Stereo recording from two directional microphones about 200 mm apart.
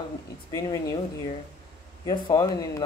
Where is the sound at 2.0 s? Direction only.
20° left (ahead or behind).